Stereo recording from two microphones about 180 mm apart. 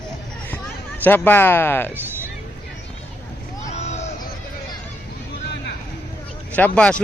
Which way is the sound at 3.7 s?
40° left (ahead or behind).